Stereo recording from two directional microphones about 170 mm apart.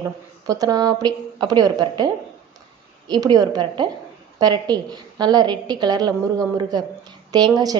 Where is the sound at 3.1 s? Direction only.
25° right (ahead or behind).